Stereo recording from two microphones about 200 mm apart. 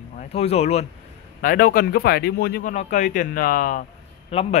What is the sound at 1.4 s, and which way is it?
Speech, 45° left (ahead or behind).